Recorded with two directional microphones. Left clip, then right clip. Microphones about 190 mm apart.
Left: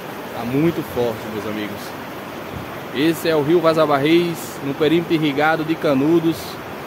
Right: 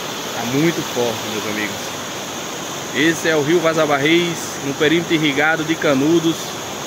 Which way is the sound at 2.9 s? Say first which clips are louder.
Right 2 dB; 15° left (ahead or behind).